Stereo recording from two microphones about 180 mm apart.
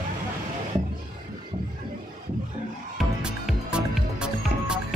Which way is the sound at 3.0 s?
5° right (ahead or behind).